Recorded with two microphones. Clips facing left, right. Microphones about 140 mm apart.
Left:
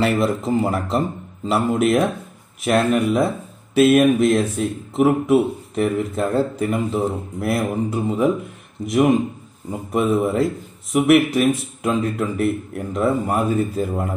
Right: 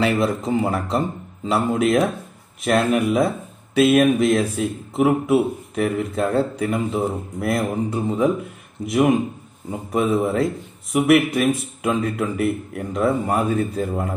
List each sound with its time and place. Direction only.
0.0 s speech: centre (ahead or behind)